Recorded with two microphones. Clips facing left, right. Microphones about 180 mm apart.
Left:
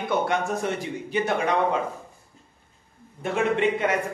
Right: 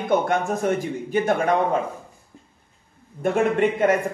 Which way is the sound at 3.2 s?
50° right (ahead or behind).